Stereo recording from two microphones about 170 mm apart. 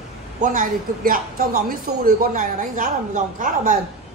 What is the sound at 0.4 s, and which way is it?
Speech, 50° right (ahead or behind).